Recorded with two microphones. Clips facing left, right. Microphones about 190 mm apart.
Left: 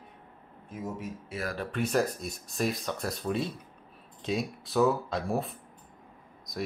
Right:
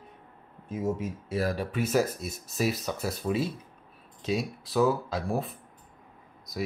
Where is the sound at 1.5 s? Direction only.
5° right (ahead or behind).